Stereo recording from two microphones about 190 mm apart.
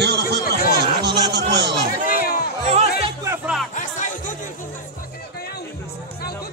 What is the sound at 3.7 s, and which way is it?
Music, 40° left (ahead or behind).